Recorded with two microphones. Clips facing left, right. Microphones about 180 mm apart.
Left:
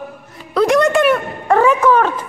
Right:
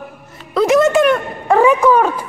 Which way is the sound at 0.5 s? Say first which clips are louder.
Right 1 dB; centre (ahead or behind).